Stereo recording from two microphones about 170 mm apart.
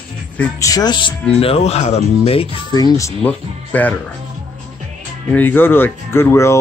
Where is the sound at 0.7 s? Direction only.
25° left (ahead or behind).